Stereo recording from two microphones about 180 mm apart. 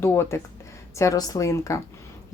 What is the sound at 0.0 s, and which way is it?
A woman's voice, 15° left (ahead or behind).